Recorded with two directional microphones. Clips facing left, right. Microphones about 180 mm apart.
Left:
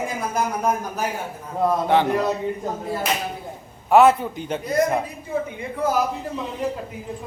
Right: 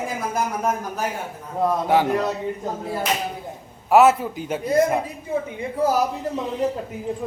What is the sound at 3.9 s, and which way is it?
Speech, 5° right (ahead or behind).